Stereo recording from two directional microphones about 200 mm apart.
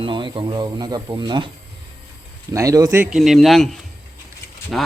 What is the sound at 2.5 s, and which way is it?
Speech, 15° right (ahead or behind).